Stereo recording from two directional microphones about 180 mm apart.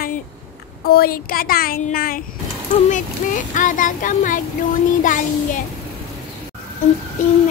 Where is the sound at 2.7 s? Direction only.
45° left (ahead or behind).